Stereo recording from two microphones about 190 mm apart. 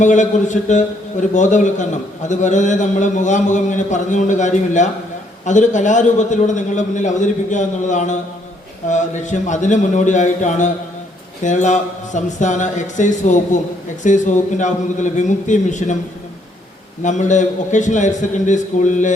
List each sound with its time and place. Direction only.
0.0 s a man's voice: 40° left (ahead or behind)
17.0 s a man's voice: 40° left (ahead or behind)